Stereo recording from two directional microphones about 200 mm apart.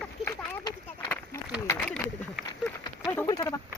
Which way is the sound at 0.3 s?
20° left (ahead or behind).